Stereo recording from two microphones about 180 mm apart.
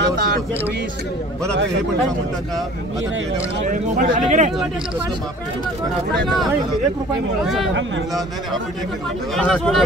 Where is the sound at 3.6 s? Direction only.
45° right (ahead or behind).